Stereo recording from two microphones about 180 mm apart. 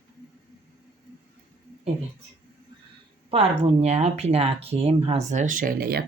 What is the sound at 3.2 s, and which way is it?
Speech, 35° right (ahead or behind).